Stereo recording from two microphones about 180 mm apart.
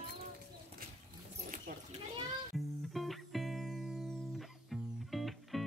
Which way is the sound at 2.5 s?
Centre (ahead or behind).